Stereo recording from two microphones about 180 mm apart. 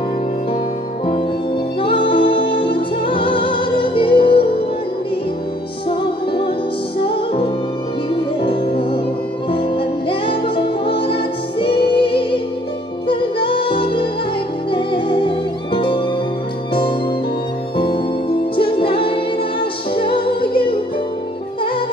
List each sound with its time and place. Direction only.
1.8 s music: 30° left (ahead or behind)
5.9 s music: 30° left (ahead or behind)
17.7 s music: 30° left (ahead or behind)